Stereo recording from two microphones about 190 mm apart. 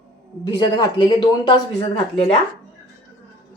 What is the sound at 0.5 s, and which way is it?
Speech, 20° left (ahead or behind).